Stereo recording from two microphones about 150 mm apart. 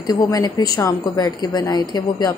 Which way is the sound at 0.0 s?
25° left (ahead or behind).